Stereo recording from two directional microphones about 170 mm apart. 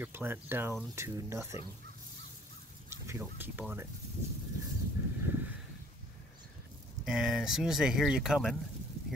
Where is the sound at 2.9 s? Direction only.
15° right (ahead or behind).